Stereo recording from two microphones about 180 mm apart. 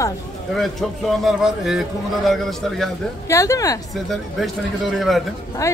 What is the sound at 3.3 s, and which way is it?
Speech, 15° left (ahead or behind).